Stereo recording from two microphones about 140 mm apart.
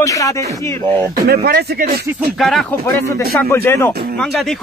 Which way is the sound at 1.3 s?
85° right.